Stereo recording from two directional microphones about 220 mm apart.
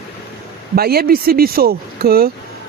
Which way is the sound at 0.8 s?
45° right (ahead or behind).